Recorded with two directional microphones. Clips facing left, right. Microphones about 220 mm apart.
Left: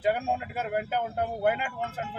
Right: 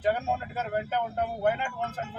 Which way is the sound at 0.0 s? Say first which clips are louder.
Even; 10° left (ahead or behind).